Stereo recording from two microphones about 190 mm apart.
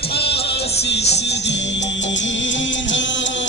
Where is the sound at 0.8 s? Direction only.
60° left (ahead or behind).